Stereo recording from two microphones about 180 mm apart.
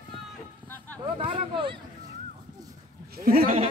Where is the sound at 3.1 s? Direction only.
55° right (ahead or behind).